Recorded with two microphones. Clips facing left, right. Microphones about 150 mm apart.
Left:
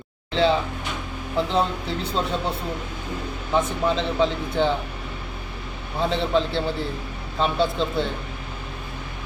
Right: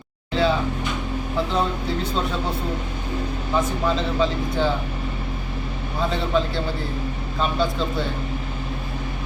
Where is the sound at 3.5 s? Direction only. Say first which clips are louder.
Left 1 dB; 20° left (ahead or behind).